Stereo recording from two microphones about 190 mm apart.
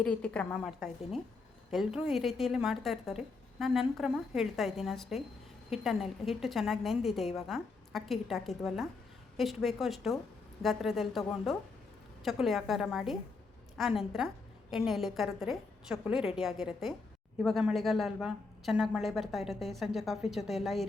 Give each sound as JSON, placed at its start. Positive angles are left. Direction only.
{"t": 0.0, "sound": "a woman's voice", "side_deg": 5}